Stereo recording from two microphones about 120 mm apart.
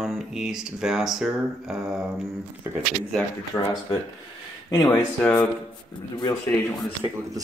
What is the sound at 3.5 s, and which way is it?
Speech, 15° left (ahead or behind).